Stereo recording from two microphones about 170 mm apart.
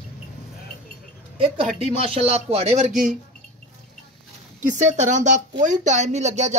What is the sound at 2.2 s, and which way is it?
Speech, 40° right (ahead or behind).